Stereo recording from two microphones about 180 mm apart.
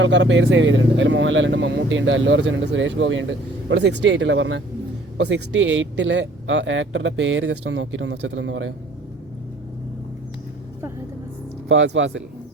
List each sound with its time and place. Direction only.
0.0 s speech: 85° right
11.7 s speech: 90° right